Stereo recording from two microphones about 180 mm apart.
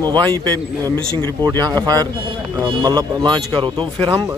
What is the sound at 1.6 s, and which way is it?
Speech, 20° right (ahead or behind).